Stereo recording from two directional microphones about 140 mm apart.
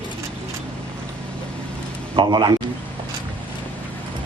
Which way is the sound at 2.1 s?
35° right (ahead or behind).